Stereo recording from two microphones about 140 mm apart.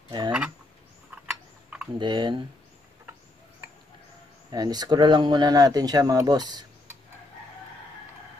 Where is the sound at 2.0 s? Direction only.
30° right (ahead or behind).